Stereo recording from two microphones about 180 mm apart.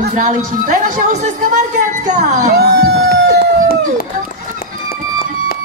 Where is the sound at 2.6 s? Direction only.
65° right (ahead or behind).